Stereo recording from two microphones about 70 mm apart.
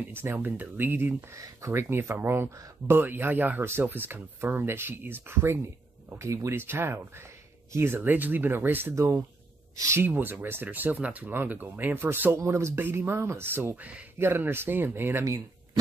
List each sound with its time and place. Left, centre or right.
0.1 s speech: right
1.3 s speech: right
6.1 s speech: right
6.6 s speech: right
8.9 s speech: right
10.0 s speech: right
15.2 s speech: right